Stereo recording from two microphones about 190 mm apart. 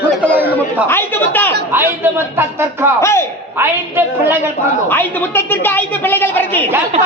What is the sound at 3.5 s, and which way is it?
Speech, 10° right (ahead or behind).